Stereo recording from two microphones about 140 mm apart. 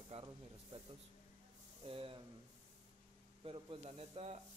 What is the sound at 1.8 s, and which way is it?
Speech, 40° right (ahead or behind).